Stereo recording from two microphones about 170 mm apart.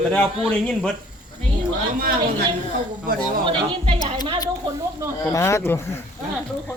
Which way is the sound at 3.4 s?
30° right (ahead or behind).